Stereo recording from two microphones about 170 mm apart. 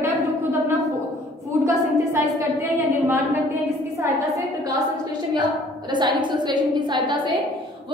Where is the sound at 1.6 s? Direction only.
15° right (ahead or behind).